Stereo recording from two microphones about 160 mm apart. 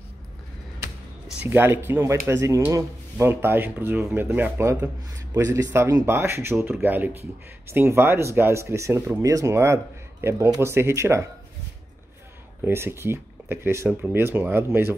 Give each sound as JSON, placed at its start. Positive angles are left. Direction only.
{"t": 1.4, "sound": "speech", "side_deg": -15}
{"t": 12.6, "sound": "speech", "side_deg": -15}